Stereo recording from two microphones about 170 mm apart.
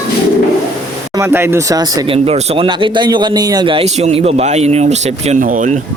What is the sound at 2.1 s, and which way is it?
Speech, 35° right (ahead or behind).